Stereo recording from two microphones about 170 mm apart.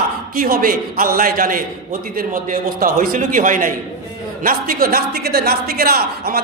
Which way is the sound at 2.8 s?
55° right (ahead or behind).